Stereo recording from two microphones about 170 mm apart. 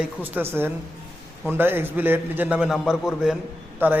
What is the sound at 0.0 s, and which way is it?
A man's voice, 10° right (ahead or behind).